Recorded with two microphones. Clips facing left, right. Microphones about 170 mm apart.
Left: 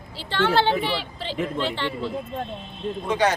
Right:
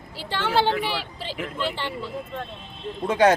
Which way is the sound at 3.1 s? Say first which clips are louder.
Right 4 dB; 50° right (ahead or behind).